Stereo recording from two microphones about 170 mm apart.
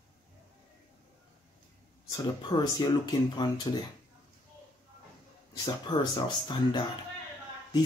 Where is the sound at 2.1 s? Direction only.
25° left (ahead or behind).